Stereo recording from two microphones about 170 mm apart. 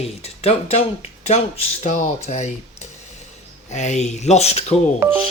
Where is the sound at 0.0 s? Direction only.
35° left (ahead or behind).